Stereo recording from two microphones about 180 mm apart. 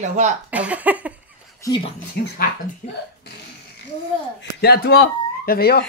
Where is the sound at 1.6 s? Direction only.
20° left (ahead or behind).